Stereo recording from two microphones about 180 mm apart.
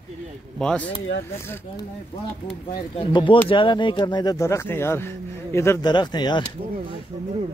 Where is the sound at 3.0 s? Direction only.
25° left (ahead or behind).